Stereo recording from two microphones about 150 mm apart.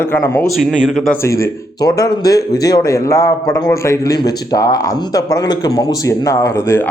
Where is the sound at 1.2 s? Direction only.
20° left (ahead or behind).